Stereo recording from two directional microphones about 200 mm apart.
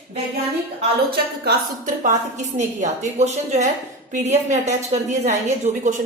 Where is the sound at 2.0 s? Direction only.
35° right (ahead or behind).